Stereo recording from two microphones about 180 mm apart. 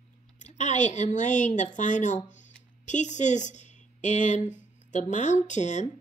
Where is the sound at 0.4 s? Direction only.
40° left (ahead or behind).